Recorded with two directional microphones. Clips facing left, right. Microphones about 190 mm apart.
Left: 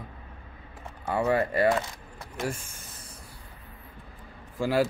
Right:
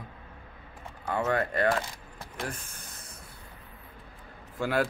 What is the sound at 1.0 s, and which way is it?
Speech, 10° left (ahead or behind).